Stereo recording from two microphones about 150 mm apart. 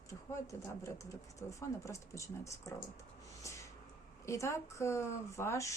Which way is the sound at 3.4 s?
20° left (ahead or behind).